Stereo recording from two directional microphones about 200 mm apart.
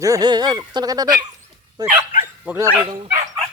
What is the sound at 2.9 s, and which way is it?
Speech, 30° right (ahead or behind).